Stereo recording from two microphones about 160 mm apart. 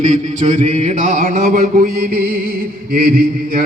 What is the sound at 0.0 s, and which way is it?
Mantra, 50° right (ahead or behind).